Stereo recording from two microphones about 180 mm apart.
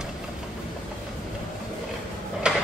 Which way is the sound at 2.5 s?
5° right (ahead or behind).